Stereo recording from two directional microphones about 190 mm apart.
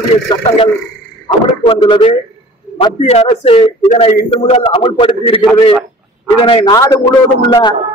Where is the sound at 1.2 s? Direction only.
25° left (ahead or behind).